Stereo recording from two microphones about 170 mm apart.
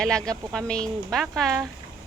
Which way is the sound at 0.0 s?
5° left (ahead or behind).